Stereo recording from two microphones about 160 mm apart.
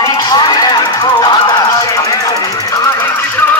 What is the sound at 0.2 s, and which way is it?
Music, 25° left (ahead or behind).